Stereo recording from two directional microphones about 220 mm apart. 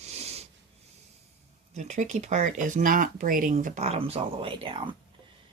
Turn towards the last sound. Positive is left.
turn(degrees=-25)  # may be behind; listen again after turning